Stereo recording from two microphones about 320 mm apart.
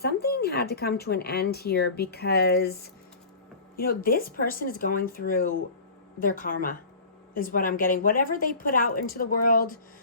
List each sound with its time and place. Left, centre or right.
0.0 s speech: left